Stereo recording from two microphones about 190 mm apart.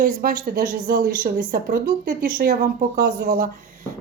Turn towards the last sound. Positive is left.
turn(degrees=-45)  # may be behind; listen again after turning